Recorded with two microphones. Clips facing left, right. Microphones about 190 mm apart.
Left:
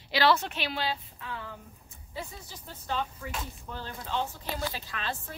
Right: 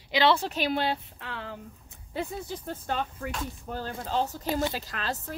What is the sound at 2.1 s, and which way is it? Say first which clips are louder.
A woman's voice: right 8 dB; 55° right (ahead or behind).